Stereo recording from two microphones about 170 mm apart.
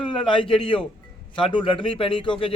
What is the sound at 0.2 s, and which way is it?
A man's voice, 30° left (ahead or behind).